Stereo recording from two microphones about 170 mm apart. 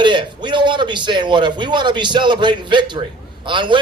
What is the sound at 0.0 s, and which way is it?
A man's voice, 25° right (ahead or behind).